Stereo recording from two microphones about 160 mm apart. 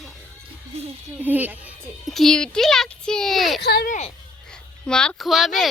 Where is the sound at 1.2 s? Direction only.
10° right (ahead or behind).